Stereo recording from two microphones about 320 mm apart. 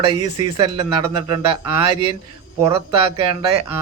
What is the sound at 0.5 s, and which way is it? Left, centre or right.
Speech, centre.